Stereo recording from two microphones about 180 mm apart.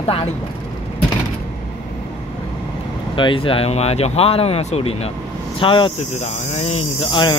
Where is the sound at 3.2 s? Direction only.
30° left (ahead or behind).